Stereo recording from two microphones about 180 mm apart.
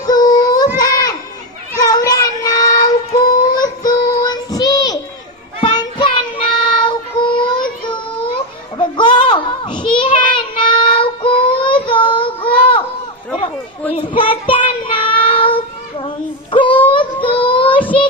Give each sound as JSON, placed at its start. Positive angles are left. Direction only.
{"t": 0.1, "sound": "child singing", "side_deg": 20}
{"t": 0.8, "sound": "children playing", "side_deg": 20}
{"t": 1.8, "sound": "child singing", "side_deg": 20}
{"t": 13.9, "sound": "child singing", "side_deg": 30}
{"t": 16.5, "sound": "a sound", "side_deg": 30}
{"t": 16.8, "sound": "child singing", "side_deg": 30}